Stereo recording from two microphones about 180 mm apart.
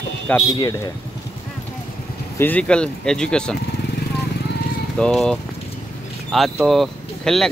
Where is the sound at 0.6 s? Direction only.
20° left (ahead or behind).